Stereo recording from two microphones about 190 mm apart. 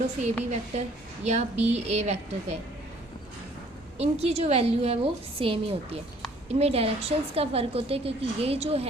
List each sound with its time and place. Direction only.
0.5 s a woman's voice: 35° right (ahead or behind)
3.9 s a woman's voice: 35° right (ahead or behind)